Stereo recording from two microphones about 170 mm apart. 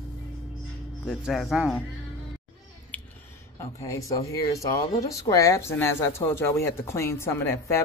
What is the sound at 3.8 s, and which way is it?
Speech, 20° left (ahead or behind).